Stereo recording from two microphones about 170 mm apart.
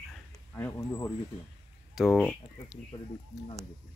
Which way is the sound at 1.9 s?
Centre (ahead or behind).